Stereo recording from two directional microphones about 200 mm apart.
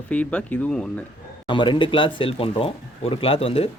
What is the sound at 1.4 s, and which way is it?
Speech, 25° left (ahead or behind).